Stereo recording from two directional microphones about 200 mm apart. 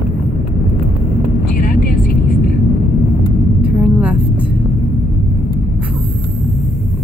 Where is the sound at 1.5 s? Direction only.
45° left (ahead or behind).